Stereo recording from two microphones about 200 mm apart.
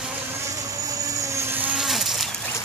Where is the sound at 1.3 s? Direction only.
5° right (ahead or behind).